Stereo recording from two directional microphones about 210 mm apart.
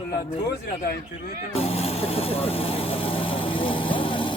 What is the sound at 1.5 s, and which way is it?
Vehicle, 30° left (ahead or behind).